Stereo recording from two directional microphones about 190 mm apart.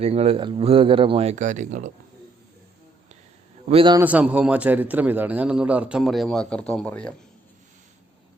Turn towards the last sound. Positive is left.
turn(degrees=5)  # may be behind; listen again after turning